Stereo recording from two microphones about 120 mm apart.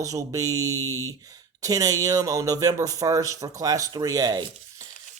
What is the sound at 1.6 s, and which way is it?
A man's voice, 30° right (ahead or behind).